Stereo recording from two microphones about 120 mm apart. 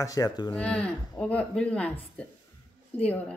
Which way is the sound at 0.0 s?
30° left (ahead or behind).